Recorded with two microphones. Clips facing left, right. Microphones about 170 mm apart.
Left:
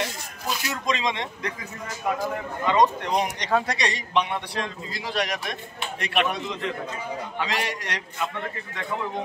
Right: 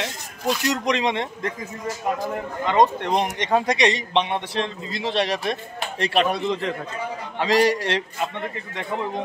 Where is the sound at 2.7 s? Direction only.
50° right (ahead or behind).